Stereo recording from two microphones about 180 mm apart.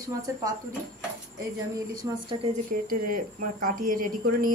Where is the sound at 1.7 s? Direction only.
20° right (ahead or behind).